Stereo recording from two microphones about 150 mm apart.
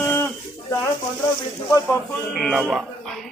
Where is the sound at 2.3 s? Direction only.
Centre (ahead or behind).